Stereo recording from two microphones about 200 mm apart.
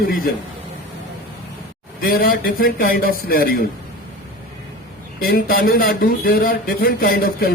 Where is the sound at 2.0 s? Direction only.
50° left (ahead or behind).